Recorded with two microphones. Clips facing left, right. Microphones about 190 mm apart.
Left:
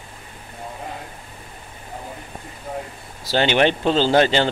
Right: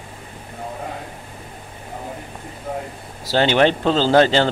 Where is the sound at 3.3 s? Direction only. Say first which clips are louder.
Right 2 dB; 20° left (ahead or behind).